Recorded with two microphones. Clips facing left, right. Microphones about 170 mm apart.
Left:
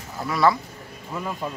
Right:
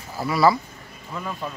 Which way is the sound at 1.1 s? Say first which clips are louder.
Left 1 dB; 15° left (ahead or behind).